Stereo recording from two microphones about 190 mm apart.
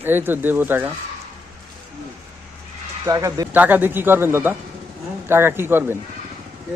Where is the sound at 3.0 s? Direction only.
20° right (ahead or behind).